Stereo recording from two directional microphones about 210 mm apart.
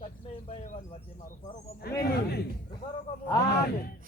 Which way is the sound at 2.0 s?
50° left (ahead or behind).